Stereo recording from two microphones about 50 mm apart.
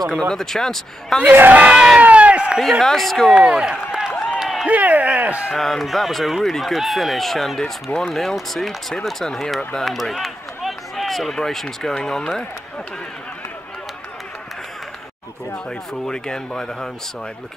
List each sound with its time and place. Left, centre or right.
0.0 s speech: centre
1.5 s speech: right
2.0 s a sound: right
2.6 s speech: centre
3.3 s speech: centre
4.3 s a sound: centre
4.6 s speech: right
5.6 s speech: centre
9.8 s run: centre
11.3 s speech: centre
15.9 s speech: centre